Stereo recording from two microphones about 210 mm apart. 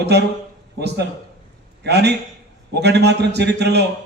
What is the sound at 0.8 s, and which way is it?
A man's voice, 50° right (ahead or behind).